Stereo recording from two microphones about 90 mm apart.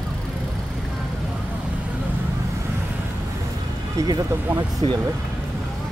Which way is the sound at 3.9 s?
50° right (ahead or behind).